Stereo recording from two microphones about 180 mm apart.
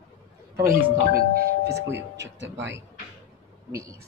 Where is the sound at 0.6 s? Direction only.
50° right (ahead or behind).